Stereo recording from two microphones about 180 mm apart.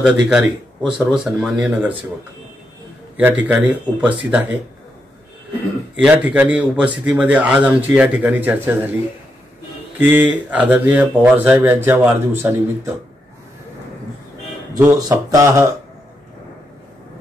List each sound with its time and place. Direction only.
0.0 s speech: 5° right (ahead or behind)
3.2 s speech: 10° right (ahead or behind)
5.9 s speech: 10° right (ahead or behind)
9.9 s speech: 10° right (ahead or behind)
14.8 s speech: 15° right (ahead or behind)